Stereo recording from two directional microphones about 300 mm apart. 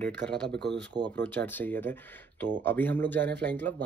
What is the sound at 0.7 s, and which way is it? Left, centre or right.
Speech, centre.